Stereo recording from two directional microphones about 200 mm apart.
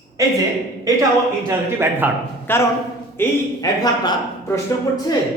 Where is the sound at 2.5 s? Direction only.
10° left (ahead or behind).